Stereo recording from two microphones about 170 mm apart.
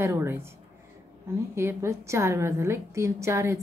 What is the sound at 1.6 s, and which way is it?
A woman's voice, 15° right (ahead or behind).